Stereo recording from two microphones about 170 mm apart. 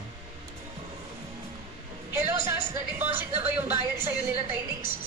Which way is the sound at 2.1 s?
15° right (ahead or behind).